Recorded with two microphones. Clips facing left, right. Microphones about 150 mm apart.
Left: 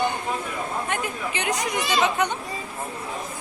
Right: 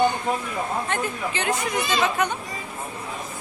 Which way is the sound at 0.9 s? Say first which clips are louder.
Right 1 dB; 15° left (ahead or behind).